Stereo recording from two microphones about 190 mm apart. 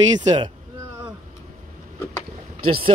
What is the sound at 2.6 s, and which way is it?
Speech, 30° right (ahead or behind).